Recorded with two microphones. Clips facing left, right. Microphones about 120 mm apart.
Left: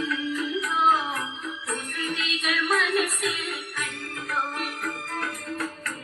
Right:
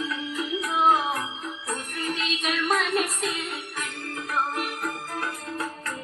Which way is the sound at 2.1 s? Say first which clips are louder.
Even; 30° right (ahead or behind).